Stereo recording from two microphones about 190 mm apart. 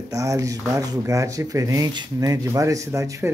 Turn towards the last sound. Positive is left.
turn(degrees=-15)  # may be behind; listen again after turning